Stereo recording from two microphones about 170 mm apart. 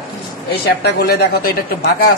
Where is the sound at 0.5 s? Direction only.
70° left (ahead or behind).